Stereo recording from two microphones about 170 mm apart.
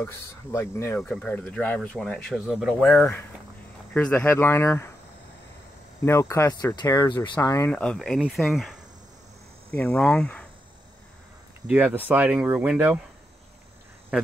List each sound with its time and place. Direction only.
0.0 s speech: 15° left (ahead or behind)
0.9 s speech: 5° left (ahead or behind)
6.0 s speech: 15° left (ahead or behind)
7.7 s speech: 5° left (ahead or behind)
9.7 s cricket: 5° left (ahead or behind)
11.6 s speech: 10° right (ahead or behind)
14.1 s speech: 5° right (ahead or behind)